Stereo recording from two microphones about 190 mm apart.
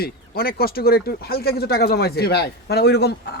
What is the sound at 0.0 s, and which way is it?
Speech, 55° left (ahead or behind).